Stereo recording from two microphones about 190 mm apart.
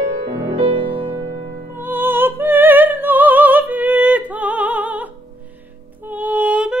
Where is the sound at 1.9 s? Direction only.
10° right (ahead or behind).